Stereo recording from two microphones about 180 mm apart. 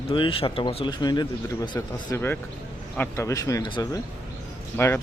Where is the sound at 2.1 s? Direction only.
10° left (ahead or behind).